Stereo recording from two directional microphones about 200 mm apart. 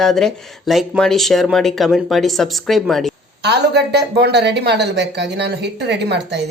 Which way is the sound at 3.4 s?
55° right (ahead or behind).